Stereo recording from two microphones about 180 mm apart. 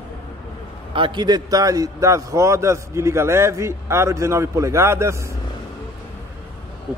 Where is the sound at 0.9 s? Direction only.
25° right (ahead or behind).